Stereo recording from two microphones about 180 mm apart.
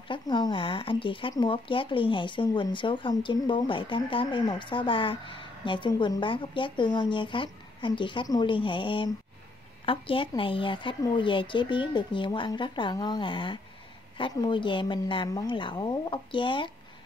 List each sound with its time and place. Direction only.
0.1 s speech: 25° left (ahead or behind)